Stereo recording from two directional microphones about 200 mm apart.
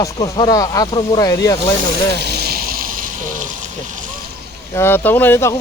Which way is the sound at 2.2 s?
50° right (ahead or behind).